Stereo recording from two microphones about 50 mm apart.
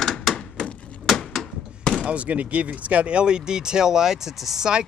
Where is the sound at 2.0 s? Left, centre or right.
Right.